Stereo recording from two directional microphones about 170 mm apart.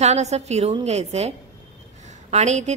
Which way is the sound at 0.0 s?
40° right (ahead or behind).